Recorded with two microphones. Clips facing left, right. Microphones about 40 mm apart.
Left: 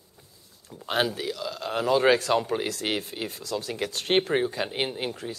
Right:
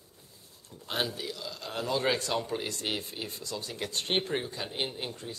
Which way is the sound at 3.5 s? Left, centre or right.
Left.